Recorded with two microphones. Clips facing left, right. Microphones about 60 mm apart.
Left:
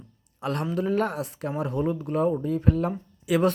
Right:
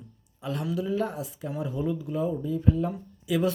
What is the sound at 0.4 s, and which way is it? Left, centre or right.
Speech, left.